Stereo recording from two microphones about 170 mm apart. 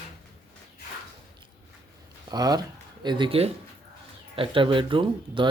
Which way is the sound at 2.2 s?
25° right (ahead or behind).